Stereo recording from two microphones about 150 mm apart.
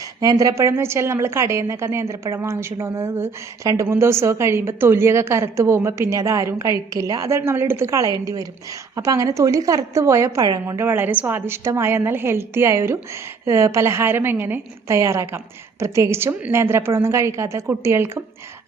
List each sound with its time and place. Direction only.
0.2 s a woman's voice: 25° right (ahead or behind)